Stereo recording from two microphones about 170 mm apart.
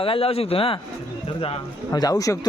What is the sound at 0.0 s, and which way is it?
A man's voice, 35° left (ahead or behind).